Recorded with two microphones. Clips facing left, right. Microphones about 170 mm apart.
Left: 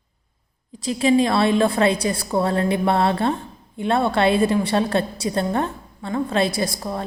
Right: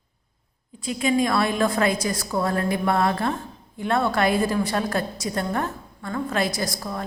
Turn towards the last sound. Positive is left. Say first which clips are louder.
# left 4 dB
turn(degrees=25)  # may be behind; listen again after turning